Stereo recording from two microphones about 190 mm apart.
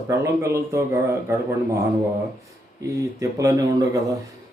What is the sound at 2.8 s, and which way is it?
Speech, 15° right (ahead or behind).